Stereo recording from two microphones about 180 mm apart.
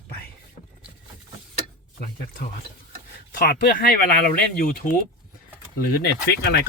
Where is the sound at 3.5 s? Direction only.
55° left (ahead or behind).